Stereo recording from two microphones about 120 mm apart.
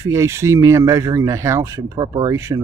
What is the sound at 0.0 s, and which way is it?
Speech, 25° right (ahead or behind).